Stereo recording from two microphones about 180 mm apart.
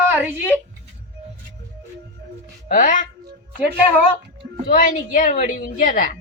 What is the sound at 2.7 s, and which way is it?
Speech, 45° left (ahead or behind).